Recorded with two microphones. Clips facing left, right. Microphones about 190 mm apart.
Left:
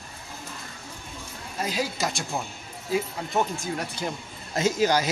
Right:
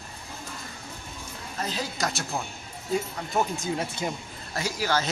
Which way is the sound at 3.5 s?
20° right (ahead or behind).